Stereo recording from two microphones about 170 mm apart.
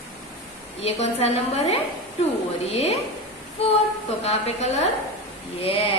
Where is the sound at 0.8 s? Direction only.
40° left (ahead or behind).